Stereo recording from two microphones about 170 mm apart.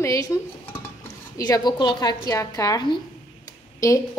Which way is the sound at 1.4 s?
25° left (ahead or behind).